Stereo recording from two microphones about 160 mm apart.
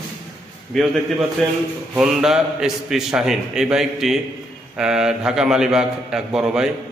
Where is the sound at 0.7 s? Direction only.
Centre (ahead or behind).